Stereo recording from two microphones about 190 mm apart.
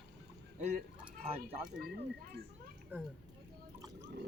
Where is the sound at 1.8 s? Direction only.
50° right (ahead or behind).